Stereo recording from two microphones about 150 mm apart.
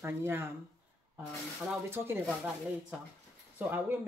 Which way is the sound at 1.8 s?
15° right (ahead or behind).